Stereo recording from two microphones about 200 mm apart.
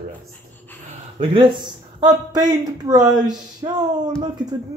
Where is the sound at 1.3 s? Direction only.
25° right (ahead or behind).